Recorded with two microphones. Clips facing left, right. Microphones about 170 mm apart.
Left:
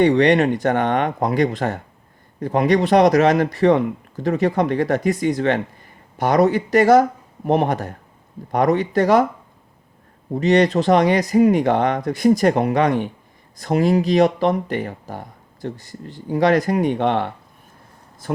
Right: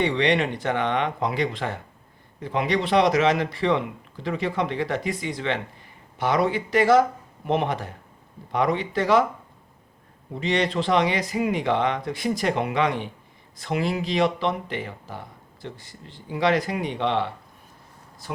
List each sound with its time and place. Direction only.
0.0 s speech: 45° left (ahead or behind)
10.3 s speech: 45° left (ahead or behind)